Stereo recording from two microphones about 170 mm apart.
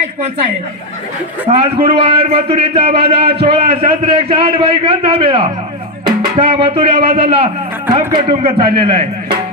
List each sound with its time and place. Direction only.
1.5 s a man's voice: 40° right (ahead or behind)